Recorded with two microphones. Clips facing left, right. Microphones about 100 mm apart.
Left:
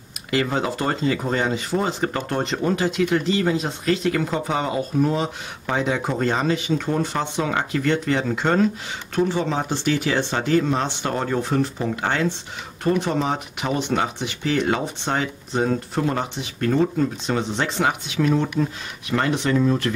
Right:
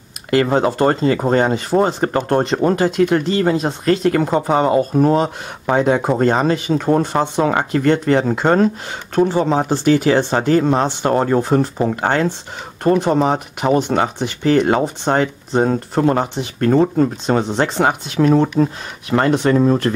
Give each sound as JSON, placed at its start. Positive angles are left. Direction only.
{"t": 0.3, "sound": "speech", "side_deg": -45}